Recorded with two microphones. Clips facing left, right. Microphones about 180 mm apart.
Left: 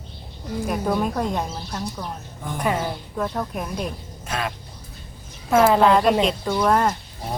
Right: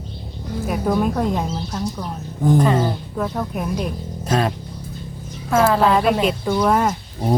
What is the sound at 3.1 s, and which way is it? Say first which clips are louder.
Speech: right 2 dB; centre (ahead or behind).